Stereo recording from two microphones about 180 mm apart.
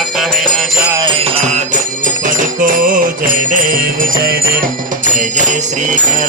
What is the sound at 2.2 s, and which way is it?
Jingle bell, 45° right (ahead or behind).